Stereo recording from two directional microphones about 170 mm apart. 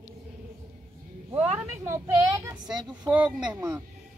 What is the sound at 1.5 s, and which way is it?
A woman's voice, 15° right (ahead or behind).